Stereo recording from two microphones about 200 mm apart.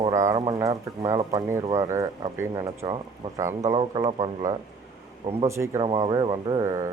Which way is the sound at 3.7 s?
25° right (ahead or behind).